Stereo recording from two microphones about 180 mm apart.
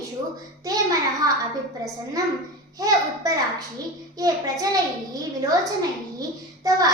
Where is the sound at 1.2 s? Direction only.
20° right (ahead or behind).